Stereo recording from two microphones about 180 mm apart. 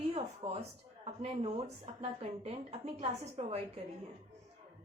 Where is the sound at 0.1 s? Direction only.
35° right (ahead or behind).